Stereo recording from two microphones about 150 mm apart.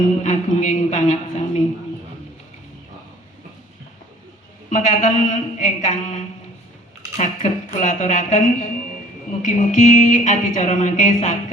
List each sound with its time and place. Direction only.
0.2 s speech: 55° left (ahead or behind)
4.7 s speech: 55° left (ahead or behind)